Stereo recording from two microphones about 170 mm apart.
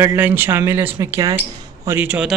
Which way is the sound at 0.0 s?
10° right (ahead or behind).